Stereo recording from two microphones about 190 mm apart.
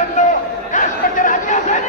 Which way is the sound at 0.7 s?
45° left (ahead or behind).